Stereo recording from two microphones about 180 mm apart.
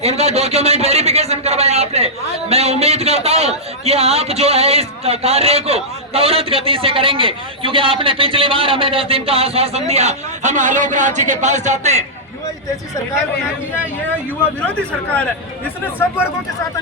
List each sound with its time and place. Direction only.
0.0 s a man's voice: 35° right (ahead or behind)